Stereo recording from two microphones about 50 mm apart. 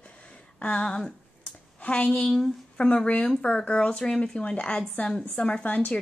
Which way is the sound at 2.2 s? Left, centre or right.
Centre.